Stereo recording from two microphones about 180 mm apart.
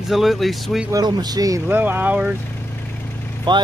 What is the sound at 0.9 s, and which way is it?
Speech, 20° right (ahead or behind).